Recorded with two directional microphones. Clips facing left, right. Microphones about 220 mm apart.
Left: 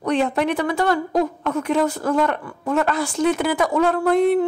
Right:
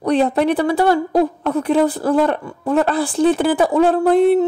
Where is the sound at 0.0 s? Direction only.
35° right (ahead or behind).